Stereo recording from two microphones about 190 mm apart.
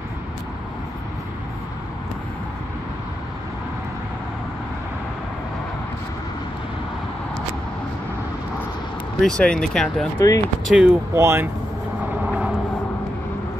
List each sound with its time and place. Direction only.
9.2 s speech: 5° left (ahead or behind)
10.1 s speech: 20° left (ahead or behind)
10.7 s speech: 5° right (ahead or behind)
12.3 s vehicle: 5° right (ahead or behind)